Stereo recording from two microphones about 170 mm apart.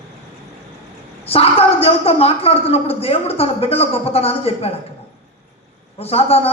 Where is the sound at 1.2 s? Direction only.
35° left (ahead or behind).